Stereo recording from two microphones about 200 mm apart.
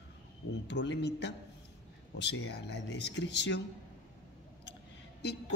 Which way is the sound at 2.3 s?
55° left (ahead or behind).